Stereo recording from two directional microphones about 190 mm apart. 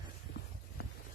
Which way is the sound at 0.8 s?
50° left (ahead or behind).